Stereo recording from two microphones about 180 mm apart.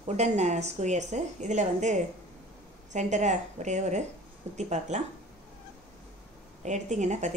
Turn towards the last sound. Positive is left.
turn(degrees=-40)  # may be behind; listen again after turning